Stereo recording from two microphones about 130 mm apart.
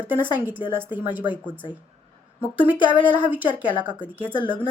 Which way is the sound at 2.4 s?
15° right (ahead or behind).